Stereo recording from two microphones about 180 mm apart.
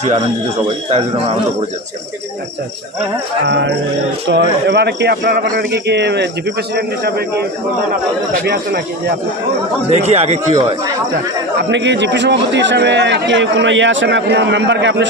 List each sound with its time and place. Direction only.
0.9 s a man's voice: 35° right (ahead or behind)
3.4 s speech: 75° right (ahead or behind)
9.9 s a man's voice: 35° right (ahead or behind)
11.7 s a man's voice: 80° right